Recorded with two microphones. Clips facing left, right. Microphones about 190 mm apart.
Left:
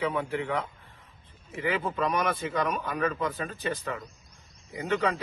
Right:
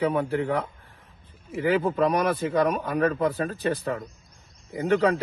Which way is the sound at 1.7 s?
35° right (ahead or behind).